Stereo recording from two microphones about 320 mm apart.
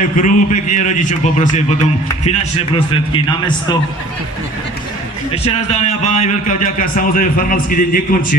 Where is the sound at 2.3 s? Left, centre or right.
Centre.